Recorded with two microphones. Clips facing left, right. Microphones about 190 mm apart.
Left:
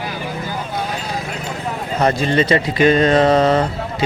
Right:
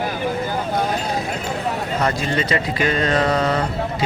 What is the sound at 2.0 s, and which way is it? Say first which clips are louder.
Speech: left 8 dB; 25° left (ahead or behind).